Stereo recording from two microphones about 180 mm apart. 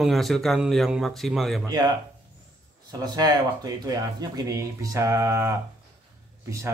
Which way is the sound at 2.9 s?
20° right (ahead or behind).